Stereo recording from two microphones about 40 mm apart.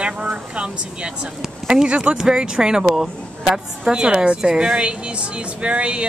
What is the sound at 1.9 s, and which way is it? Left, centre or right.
Speech, right.